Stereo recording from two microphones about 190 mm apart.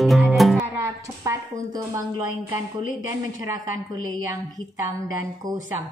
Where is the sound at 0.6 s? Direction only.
15° right (ahead or behind).